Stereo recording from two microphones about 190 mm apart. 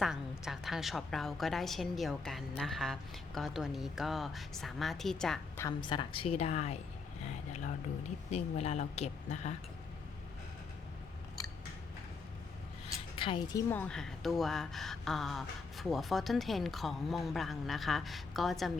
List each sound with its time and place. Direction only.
0.0 s speech: centre (ahead or behind)
5.5 s a woman's voice: 20° left (ahead or behind)
8.3 s a woman's voice: 35° left (ahead or behind)
13.1 s speech: 25° left (ahead or behind); by 18.7 s centre (ahead or behind)